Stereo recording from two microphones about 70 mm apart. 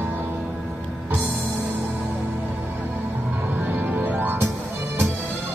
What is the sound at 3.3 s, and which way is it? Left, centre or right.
Music, right.